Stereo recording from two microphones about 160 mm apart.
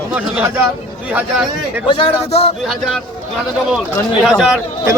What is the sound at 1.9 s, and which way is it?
Speech, 35° left (ahead or behind).